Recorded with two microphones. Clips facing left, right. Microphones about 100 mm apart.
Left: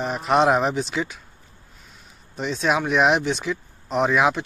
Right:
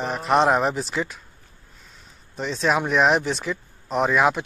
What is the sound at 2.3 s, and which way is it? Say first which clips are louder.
Speech: even; 5° left (ahead or behind).